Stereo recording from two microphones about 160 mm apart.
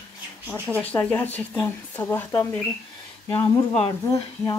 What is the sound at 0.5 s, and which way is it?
Speech, 10° left (ahead or behind).